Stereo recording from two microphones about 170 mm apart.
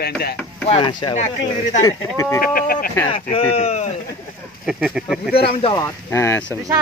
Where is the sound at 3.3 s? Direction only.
35° left (ahead or behind).